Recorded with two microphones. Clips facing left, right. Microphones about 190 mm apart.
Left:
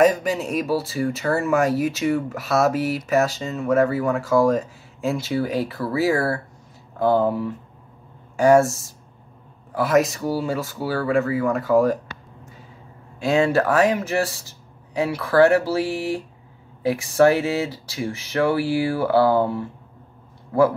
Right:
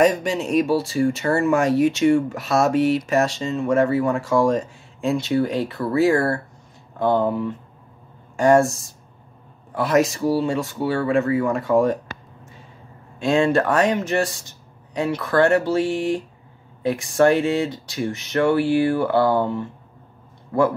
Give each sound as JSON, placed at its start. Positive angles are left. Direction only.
{"t": 0.0, "sound": "speech", "side_deg": 0}
{"t": 13.2, "sound": "speech", "side_deg": 5}